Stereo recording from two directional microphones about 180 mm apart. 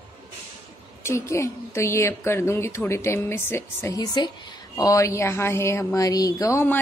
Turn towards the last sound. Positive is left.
turn(degrees=15)  # may be behind; listen again after turning